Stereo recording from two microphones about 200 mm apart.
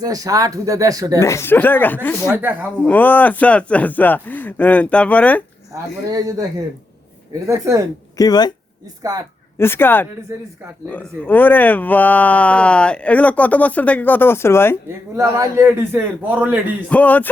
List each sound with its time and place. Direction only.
0.0 s a man's voice: 20° right (ahead or behind)
1.2 s speech: 15° left (ahead or behind)
2.2 s a man's voice: 10° right (ahead or behind)
2.8 s speech: 10° left (ahead or behind)
5.7 s a man's voice: 15° right (ahead or behind)
7.4 s a man's voice: 15° right (ahead or behind)
8.2 s speech: 20° left (ahead or behind)
9.6 s speech: 10° left (ahead or behind)
15.1 s a man's voice: 15° right (ahead or behind)
16.9 s speech: 5° left (ahead or behind)